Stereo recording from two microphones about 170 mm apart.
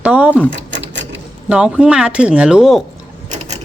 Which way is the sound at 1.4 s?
5° right (ahead or behind).